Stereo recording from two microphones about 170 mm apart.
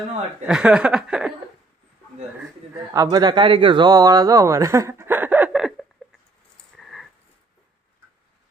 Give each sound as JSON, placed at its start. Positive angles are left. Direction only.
{"t": 0.4, "sound": "speech", "side_deg": -5}
{"t": 2.9, "sound": "speech", "side_deg": -20}
{"t": 6.7, "sound": "a sound", "side_deg": 0}